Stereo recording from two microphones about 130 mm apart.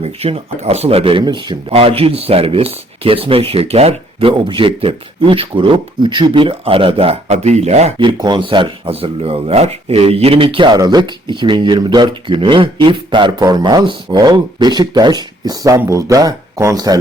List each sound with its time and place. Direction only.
0.0 s speech: 50° right (ahead or behind)
1.2 s speech: 35° right (ahead or behind)
1.7 s speech: 45° right (ahead or behind)
7.9 s speech: 35° right (ahead or behind)